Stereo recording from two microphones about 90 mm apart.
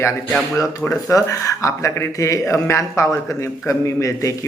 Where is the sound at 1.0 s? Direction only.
40° left (ahead or behind).